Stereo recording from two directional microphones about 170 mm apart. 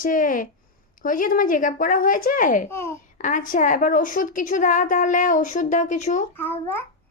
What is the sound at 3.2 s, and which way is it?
A woman's voice, 50° left (ahead or behind).